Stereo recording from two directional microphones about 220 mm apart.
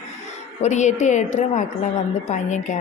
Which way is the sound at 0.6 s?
30° left (ahead or behind).